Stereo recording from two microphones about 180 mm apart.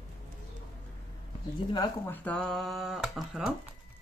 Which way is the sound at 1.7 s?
10° left (ahead or behind).